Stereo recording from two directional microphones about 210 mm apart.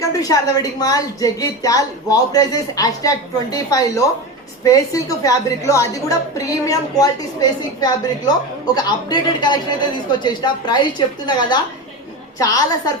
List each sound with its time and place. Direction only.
0.2 s a woman's voice: 20° left (ahead or behind)